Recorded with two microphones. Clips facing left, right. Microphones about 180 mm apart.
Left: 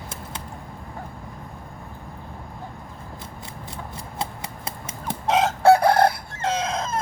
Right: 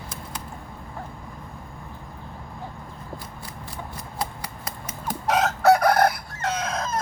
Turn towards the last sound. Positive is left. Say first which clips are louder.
# left 2 dB
turn(degrees=25)  # may be behind; listen again after turning